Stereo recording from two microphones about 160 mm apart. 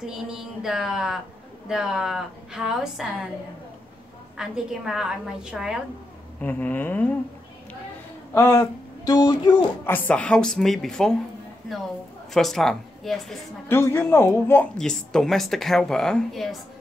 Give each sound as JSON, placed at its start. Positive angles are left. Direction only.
{"t": 0.0, "sound": "a woman's voice", "side_deg": -5}
{"t": 4.4, "sound": "a woman's voice", "side_deg": -5}
{"t": 6.4, "sound": "a man's voice", "side_deg": 10}
{"t": 8.3, "sound": "speech", "side_deg": 20}
{"t": 9.8, "sound": "a woman's voice", "side_deg": 10}
{"t": 12.4, "sound": "a woman's voice", "side_deg": 0}
{"t": 13.7, "sound": "a man's voice", "side_deg": 15}
{"t": 14.8, "sound": "a woman's voice", "side_deg": 5}